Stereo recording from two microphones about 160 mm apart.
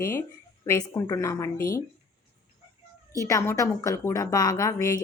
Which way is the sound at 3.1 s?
20° left (ahead or behind).